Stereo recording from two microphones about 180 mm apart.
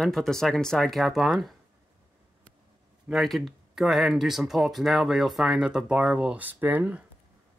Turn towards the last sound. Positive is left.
turn(degrees=-10)  # may be behind; listen again after turning